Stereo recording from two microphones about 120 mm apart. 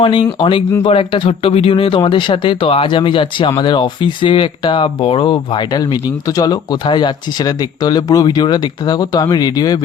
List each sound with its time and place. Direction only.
0.0 s speech: 50° left (ahead or behind)